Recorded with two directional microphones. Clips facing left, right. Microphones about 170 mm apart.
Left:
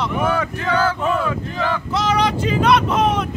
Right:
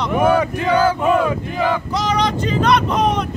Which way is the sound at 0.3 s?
15° right (ahead or behind).